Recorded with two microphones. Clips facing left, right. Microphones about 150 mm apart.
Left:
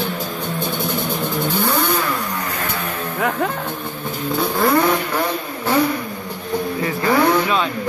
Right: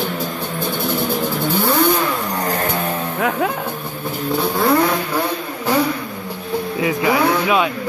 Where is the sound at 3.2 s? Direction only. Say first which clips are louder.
Even; 5° right (ahead or behind).